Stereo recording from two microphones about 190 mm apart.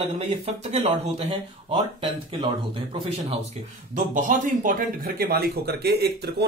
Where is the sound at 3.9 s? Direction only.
40° right (ahead or behind).